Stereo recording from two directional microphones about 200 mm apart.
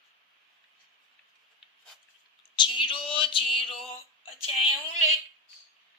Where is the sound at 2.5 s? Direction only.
25° left (ahead or behind).